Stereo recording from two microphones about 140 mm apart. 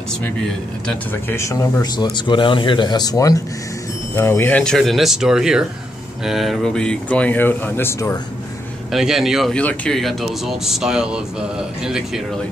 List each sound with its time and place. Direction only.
0.2 s speech: 5° left (ahead or behind)
1.3 s speech: 20° left (ahead or behind)
8.9 s speech: centre (ahead or behind)